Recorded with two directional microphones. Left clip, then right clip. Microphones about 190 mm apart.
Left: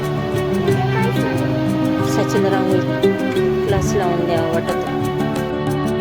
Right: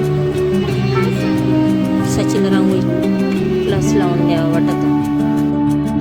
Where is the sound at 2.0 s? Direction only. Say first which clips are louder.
Right 1 dB; 20° right (ahead or behind).